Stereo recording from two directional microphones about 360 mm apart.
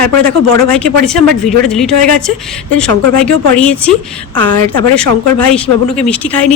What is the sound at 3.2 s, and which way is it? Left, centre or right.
Speech, centre.